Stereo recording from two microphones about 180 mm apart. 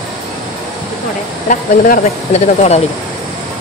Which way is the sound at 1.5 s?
50° left (ahead or behind).